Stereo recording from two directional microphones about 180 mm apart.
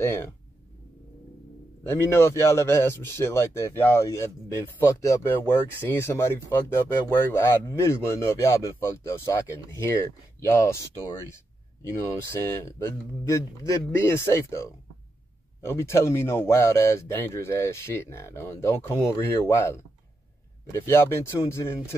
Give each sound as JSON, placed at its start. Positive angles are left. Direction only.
{"t": 0.0, "sound": "speech", "side_deg": 15}
{"t": 1.9, "sound": "speech", "side_deg": 15}
{"t": 12.3, "sound": "speech", "side_deg": 15}
{"t": 20.8, "sound": "speech", "side_deg": 15}